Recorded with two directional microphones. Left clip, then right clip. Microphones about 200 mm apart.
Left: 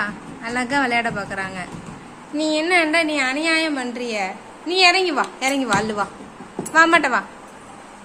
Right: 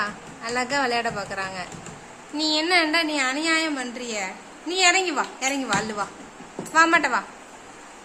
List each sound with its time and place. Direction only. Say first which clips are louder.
0.0 s a woman's voice: left 2 dB; 10° right (ahead or behind)